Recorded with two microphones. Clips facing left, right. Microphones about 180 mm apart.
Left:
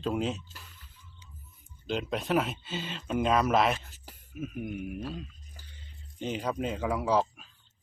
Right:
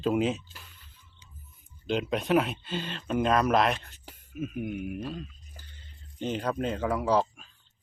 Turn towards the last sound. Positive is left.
turn(degrees=5)  # may be behind; listen again after turning